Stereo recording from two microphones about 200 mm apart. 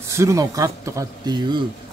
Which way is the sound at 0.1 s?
15° right (ahead or behind).